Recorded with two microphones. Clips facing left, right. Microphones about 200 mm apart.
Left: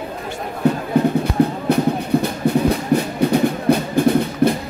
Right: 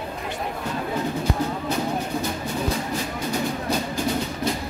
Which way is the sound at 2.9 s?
60° left (ahead or behind).